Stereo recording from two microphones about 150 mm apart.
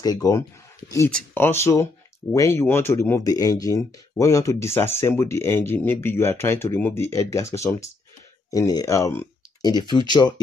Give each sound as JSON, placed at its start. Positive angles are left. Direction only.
{"t": 0.0, "sound": "speech", "side_deg": 25}